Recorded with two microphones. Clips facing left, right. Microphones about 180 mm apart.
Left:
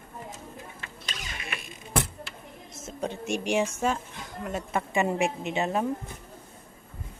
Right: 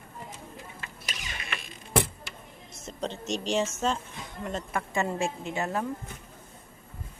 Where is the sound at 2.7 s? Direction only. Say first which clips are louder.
Left 1 dB; 5° left (ahead or behind).